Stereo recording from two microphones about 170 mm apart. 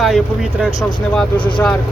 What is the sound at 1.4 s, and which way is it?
Speech, 30° left (ahead or behind).